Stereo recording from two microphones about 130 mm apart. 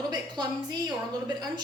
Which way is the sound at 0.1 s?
35° right (ahead or behind).